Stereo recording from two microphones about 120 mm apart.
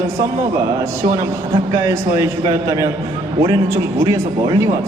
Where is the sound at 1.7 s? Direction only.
25° right (ahead or behind).